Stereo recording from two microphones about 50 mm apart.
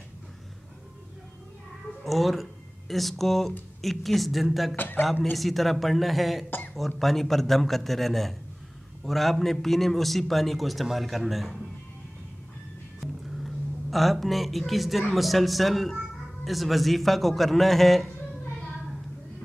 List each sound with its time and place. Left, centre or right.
2.0 s a man's voice: centre
4.7 s a man's voice: left
5.2 s a man's voice: centre
13.0 s music: centre
15.1 s a man's voice: centre